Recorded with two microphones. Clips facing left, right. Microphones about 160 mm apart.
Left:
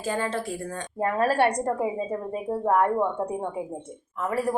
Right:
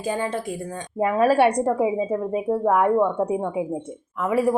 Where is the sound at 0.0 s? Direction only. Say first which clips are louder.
Right 2 dB; 15° right (ahead or behind).